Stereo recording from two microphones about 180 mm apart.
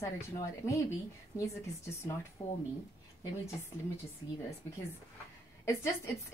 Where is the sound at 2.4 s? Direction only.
35° left (ahead or behind).